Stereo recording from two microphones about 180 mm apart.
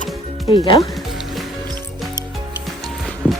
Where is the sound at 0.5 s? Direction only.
30° left (ahead or behind).